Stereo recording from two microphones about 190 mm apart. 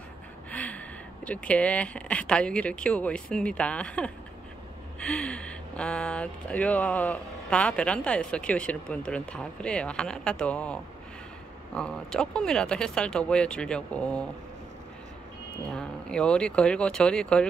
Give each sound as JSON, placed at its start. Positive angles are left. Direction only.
{"t": 0.5, "sound": "speech", "side_deg": 5}
{"t": 15.7, "sound": "speech", "side_deg": 5}